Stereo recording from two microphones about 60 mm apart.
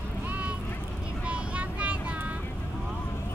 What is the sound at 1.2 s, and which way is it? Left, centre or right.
Vehicle, right.